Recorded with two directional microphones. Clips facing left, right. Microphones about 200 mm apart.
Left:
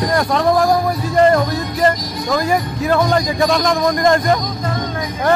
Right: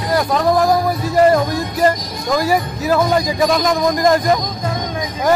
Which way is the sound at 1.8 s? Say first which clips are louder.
Even; 10° right (ahead or behind).